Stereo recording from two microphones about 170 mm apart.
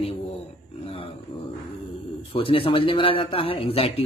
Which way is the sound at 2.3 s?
35° left (ahead or behind).